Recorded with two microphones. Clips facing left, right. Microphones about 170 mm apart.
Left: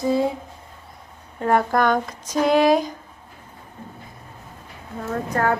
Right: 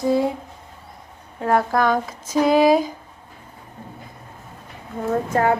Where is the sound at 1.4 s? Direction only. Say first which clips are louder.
Even; centre (ahead or behind).